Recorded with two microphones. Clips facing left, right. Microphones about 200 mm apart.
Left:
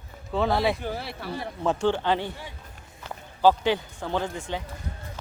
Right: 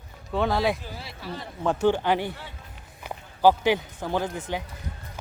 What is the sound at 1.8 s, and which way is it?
Speech, 10° right (ahead or behind).